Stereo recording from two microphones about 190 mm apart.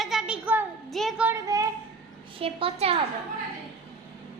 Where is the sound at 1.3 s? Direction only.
20° right (ahead or behind).